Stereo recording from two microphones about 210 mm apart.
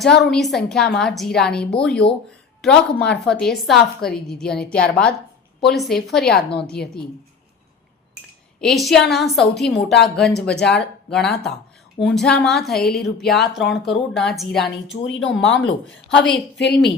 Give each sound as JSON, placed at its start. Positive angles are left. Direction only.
{"t": 0.0, "sound": "a woman's voice", "side_deg": 0}
{"t": 8.6, "sound": "a woman's voice", "side_deg": 0}
{"t": 15.0, "sound": "speech", "side_deg": 60}
{"t": 16.2, "sound": "a woman's voice", "side_deg": 0}